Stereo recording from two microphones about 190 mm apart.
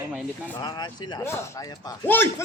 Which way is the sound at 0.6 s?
20° left (ahead or behind).